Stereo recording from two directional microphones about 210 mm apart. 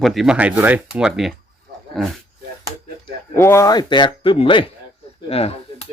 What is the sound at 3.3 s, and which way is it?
Speech, 10° left (ahead or behind).